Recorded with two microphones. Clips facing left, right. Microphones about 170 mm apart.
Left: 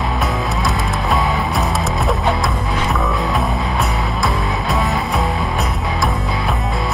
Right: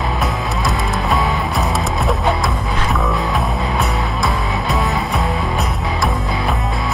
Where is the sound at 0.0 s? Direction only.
Centre (ahead or behind).